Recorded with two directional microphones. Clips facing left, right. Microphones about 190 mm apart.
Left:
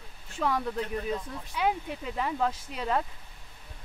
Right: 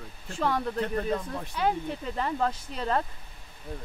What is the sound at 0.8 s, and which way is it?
Speech, 55° right (ahead or behind).